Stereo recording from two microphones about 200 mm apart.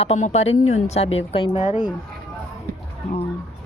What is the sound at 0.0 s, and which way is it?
Speech, 30° left (ahead or behind).